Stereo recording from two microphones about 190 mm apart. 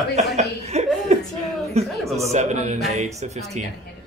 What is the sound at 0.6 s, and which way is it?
Speech, 35° right (ahead or behind).